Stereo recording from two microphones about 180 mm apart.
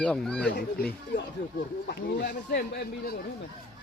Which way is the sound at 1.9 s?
70° left (ahead or behind).